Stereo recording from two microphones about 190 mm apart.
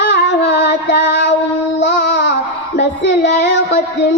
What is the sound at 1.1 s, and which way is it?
Child singing, 65° left (ahead or behind).